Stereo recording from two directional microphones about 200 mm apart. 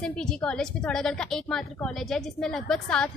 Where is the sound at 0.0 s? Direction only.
5° left (ahead or behind).